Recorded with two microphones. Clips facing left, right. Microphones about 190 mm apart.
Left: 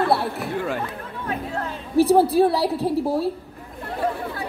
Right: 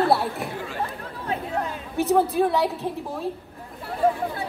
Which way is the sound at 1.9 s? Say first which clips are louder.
Left 5 dB; 35° left (ahead or behind).